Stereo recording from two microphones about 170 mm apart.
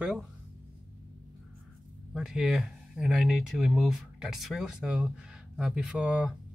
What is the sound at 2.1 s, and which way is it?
Speech, 5° right (ahead or behind).